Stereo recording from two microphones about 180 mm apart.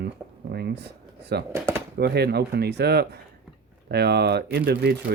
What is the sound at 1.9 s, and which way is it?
Speech, 65° right (ahead or behind).